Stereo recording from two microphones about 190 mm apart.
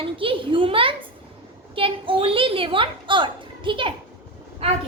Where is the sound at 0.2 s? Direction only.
25° right (ahead or behind).